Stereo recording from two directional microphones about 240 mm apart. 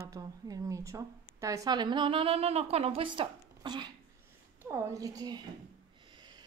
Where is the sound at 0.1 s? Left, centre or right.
Centre.